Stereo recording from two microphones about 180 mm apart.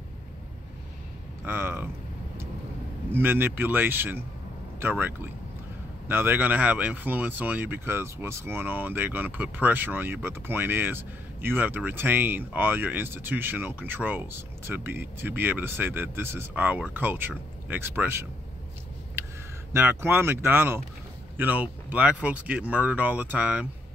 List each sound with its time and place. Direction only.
1.4 s speech: 10° right (ahead or behind)
3.1 s speech: 10° right (ahead or behind)
19.7 s speech: 15° right (ahead or behind)